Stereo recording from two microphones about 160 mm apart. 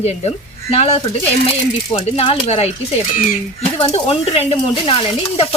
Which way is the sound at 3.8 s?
40° left (ahead or behind).